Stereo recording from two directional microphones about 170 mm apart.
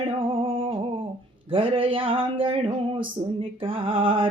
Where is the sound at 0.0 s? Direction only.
30° right (ahead or behind).